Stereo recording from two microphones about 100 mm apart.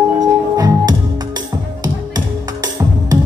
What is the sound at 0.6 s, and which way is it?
Music, 40° right (ahead or behind).